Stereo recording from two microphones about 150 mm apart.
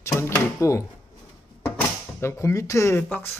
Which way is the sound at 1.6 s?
15° left (ahead or behind).